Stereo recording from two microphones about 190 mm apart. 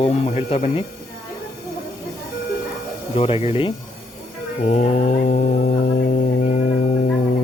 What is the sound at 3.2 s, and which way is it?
Speech, 30° left (ahead or behind).